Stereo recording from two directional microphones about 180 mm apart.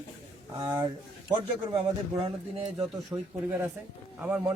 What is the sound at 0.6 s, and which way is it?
Speech, 25° right (ahead or behind).